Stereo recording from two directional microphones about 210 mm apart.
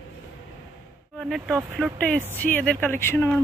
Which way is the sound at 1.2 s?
Centre (ahead or behind).